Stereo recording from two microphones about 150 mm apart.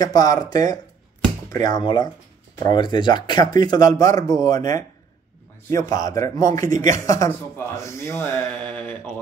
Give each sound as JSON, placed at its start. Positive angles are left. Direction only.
{"t": 0.0, "sound": "speech", "side_deg": 25}